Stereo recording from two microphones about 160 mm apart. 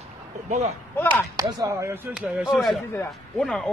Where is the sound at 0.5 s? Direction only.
50° right (ahead or behind).